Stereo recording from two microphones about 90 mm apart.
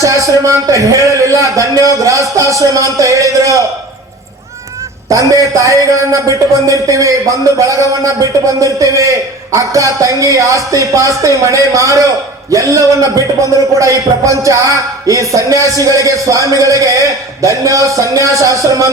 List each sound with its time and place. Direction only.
0.0 s speech: 35° right (ahead or behind)
5.0 s speech: 40° right (ahead or behind)